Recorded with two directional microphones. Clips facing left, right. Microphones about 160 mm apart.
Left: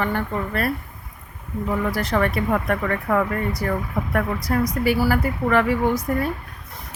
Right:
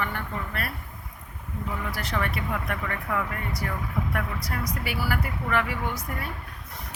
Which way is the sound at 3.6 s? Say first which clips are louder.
Left 6 dB; 40° left (ahead or behind).